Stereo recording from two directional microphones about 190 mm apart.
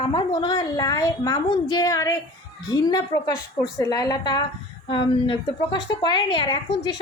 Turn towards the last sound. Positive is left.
turn(degrees=25)  # may be behind; listen again after turning